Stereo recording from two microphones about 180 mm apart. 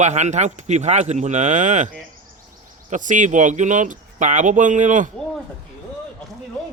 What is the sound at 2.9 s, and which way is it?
Speech, 45° right (ahead or behind).